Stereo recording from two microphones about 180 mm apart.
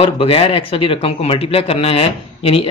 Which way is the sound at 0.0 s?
30° left (ahead or behind).